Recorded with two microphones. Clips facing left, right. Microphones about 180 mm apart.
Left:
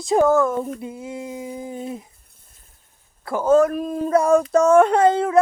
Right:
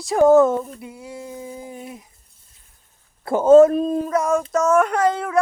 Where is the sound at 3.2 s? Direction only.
25° right (ahead or behind).